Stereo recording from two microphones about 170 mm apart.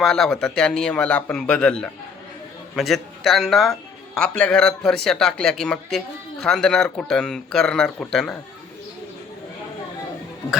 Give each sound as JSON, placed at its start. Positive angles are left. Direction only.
{"t": 0.0, "sound": "speech", "side_deg": 0}